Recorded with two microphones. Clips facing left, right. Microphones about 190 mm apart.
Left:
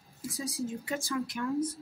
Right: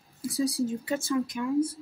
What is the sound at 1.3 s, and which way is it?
Speech, 15° right (ahead or behind).